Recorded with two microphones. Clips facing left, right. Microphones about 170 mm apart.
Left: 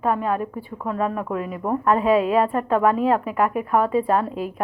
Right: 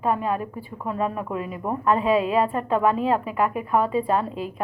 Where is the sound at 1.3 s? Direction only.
50° left (ahead or behind).